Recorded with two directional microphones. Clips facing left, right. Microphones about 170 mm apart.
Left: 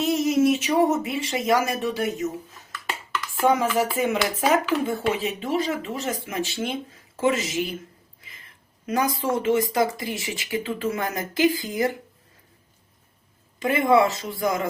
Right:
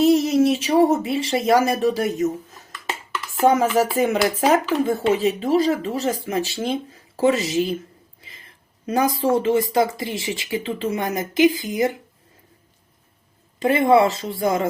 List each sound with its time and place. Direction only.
0.0 s speech: 35° right (ahead or behind)
3.4 s speech: 40° right (ahead or behind); by 11.9 s 20° right (ahead or behind)
13.6 s speech: 30° right (ahead or behind)